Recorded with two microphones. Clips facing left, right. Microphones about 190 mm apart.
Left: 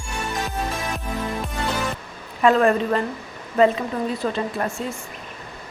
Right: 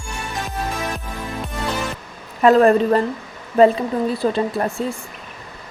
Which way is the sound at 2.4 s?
35° right (ahead or behind).